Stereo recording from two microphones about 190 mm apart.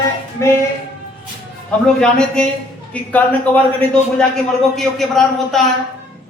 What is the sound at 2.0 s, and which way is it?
A man's voice, 5° left (ahead or behind).